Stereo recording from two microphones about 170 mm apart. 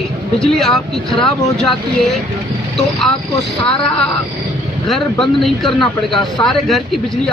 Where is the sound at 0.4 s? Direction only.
5° left (ahead or behind).